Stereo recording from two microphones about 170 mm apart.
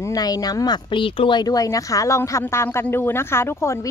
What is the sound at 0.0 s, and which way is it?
Speech, 20° left (ahead or behind).